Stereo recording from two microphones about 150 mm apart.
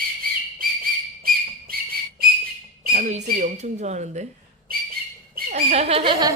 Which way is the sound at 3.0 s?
55° right (ahead or behind).